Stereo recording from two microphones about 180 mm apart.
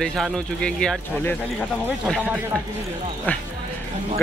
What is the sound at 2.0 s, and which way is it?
Speech, 5° right (ahead or behind).